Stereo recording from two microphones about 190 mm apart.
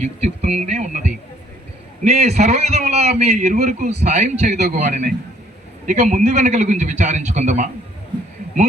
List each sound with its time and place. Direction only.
0.0 s a man's voice: 35° right (ahead or behind)